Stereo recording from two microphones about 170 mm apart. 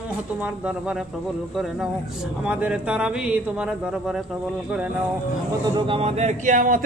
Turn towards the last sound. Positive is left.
turn(degrees=-50)  # may be behind; listen again after turning